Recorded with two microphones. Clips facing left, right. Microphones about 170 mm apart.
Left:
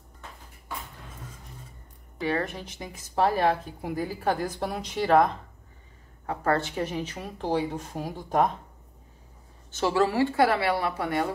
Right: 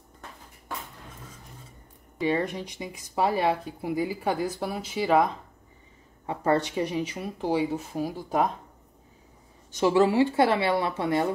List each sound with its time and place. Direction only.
2.1 s speech: 20° right (ahead or behind)
6.2 s speech: 20° right (ahead or behind)
9.7 s speech: 15° right (ahead or behind)